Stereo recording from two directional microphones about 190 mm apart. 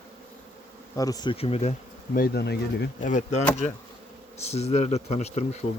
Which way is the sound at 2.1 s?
55° left (ahead or behind).